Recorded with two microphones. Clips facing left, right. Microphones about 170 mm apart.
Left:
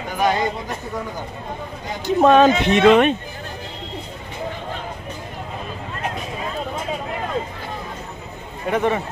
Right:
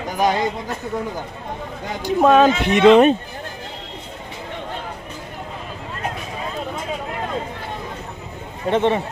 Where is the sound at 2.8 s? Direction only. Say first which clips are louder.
Right 3 dB; 30° right (ahead or behind).